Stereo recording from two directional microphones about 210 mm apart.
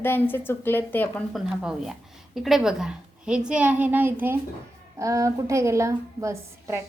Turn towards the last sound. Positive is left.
turn(degrees=-15)  # may be behind; listen again after turning